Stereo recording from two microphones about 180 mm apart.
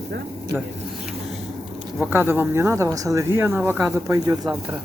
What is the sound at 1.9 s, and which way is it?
Speech, 10° right (ahead or behind).